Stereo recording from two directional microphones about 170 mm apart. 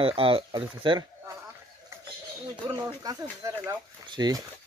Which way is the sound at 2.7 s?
20° right (ahead or behind).